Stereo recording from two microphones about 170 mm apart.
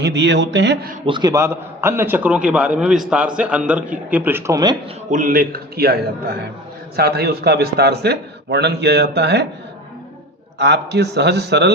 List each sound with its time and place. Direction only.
0.0 s a man's voice: 90° right; by 0.9 s 75° right (ahead or behind)
1.0 s a man's voice: 25° right (ahead or behind)
5.1 s a man's voice: 55° right (ahead or behind); by 9.5 s 75° right (ahead or behind)
10.6 s a man's voice: 80° right